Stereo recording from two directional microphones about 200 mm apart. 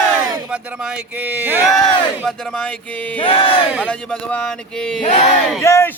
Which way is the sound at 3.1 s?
25° left (ahead or behind).